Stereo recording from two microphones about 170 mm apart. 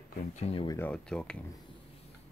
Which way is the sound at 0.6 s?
20° left (ahead or behind).